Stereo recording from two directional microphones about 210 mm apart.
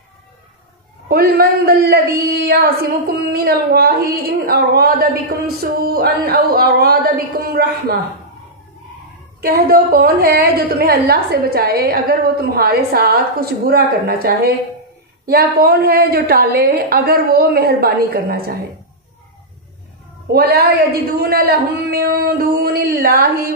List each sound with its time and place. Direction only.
1.0 s a woman's voice: 45° right (ahead or behind)
9.4 s a woman's voice: 45° right (ahead or behind)
20.3 s a woman's voice: 45° right (ahead or behind)